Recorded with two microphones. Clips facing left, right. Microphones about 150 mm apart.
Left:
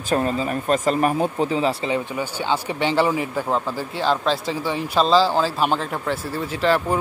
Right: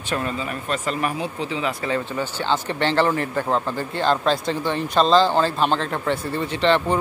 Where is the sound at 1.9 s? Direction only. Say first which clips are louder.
Even; 10° left (ahead or behind).